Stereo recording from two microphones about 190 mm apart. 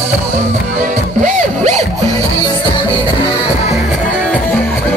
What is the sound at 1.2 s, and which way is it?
Music, 35° right (ahead or behind).